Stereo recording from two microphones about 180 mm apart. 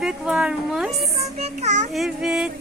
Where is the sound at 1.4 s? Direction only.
40° right (ahead or behind).